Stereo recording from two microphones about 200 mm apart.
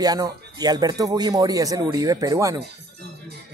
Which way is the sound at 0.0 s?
20° right (ahead or behind).